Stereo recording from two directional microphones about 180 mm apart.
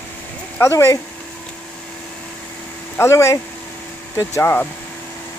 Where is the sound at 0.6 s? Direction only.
15° left (ahead or behind).